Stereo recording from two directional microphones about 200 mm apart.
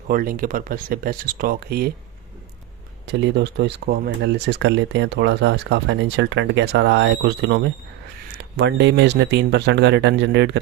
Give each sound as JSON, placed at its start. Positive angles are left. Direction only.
{"t": 0.1, "sound": "speech", "side_deg": -45}
{"t": 3.1, "sound": "speech", "side_deg": -60}